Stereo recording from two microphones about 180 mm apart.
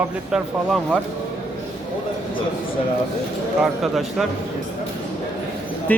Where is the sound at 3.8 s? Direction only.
Centre (ahead or behind).